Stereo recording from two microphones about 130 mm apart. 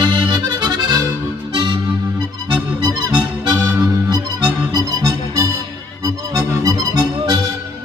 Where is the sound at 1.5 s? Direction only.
35° right (ahead or behind).